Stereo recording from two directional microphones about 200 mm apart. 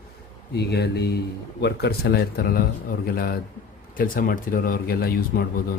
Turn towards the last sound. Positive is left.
turn(degrees=50)  # may be behind; listen again after turning